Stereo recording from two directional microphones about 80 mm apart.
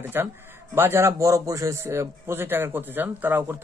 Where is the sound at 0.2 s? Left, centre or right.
Right.